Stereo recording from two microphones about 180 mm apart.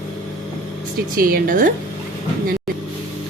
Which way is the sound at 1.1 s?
55° right (ahead or behind).